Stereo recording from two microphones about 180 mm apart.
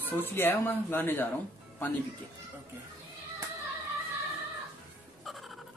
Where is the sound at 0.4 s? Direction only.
10° left (ahead or behind).